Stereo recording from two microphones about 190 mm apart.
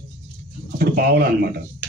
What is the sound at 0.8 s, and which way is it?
Speech, 55° right (ahead or behind).